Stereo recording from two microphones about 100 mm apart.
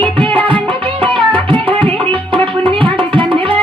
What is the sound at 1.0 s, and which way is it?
Tabla, 60° right (ahead or behind).